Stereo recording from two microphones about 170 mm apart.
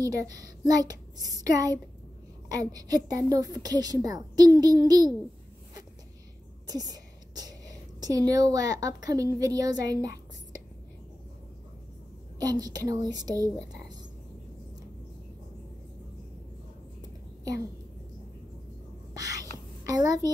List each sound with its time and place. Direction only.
0.0 s a woman's voice: 20° right (ahead or behind)
6.7 s a sound: 20° right (ahead or behind)
8.0 s a woman's voice: 20° right (ahead or behind)
12.4 s a woman's voice: 20° right (ahead or behind)
19.1 s whispering: 20° right (ahead or behind)
19.8 s a sound: 20° right (ahead or behind)